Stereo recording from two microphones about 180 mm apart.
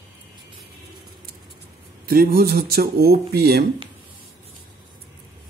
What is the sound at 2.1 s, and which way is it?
Speech, 55° right (ahead or behind).